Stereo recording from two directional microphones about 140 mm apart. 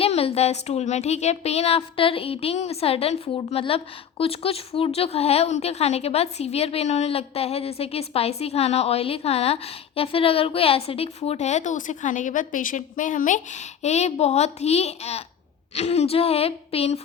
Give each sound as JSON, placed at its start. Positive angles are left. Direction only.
{"t": 0.0, "sound": "a woman's voice", "side_deg": 45}